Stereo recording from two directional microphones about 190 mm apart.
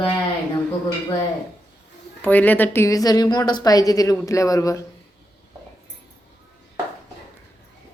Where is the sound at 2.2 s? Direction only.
10° left (ahead or behind).